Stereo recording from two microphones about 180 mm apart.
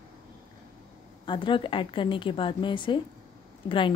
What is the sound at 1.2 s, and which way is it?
A woman's voice, 25° left (ahead or behind).